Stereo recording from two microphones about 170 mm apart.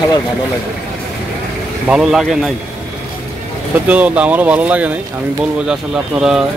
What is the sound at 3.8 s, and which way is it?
Speech, 10° right (ahead or behind).